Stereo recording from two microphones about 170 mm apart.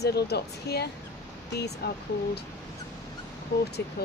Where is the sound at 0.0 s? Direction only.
75° left (ahead or behind).